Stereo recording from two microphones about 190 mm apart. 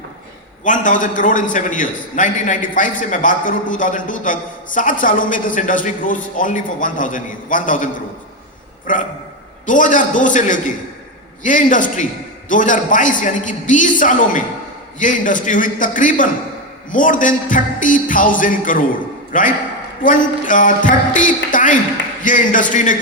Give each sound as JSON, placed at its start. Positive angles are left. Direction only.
{"t": 0.6, "sound": "a man's voice", "side_deg": 45}
{"t": 8.9, "sound": "a man's voice", "side_deg": 45}